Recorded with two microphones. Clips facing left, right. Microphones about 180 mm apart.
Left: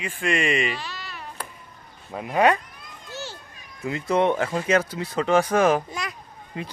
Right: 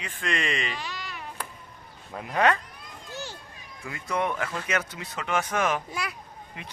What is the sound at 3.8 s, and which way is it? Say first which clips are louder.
Speech: left 7 dB; 25° left (ahead or behind).